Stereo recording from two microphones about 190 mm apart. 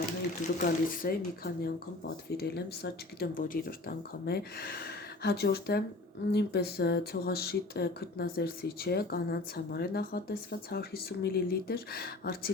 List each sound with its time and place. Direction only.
0.6 s speech: 50° left (ahead or behind)